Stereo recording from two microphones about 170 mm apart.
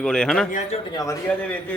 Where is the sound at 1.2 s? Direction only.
10° left (ahead or behind).